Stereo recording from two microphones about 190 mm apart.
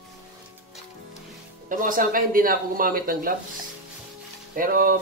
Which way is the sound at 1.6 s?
45° right (ahead or behind).